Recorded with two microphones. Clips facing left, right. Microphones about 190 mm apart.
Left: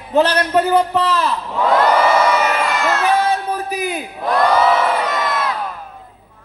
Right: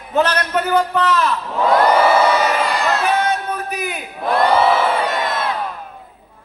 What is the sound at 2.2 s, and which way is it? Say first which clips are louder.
Crowd: even; 35° right (ahead or behind).